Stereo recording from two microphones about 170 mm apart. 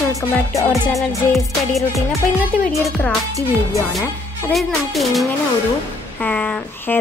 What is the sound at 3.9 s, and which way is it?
A woman's voice, centre (ahead or behind).